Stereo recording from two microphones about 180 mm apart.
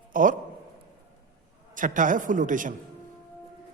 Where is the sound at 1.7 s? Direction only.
45° right (ahead or behind).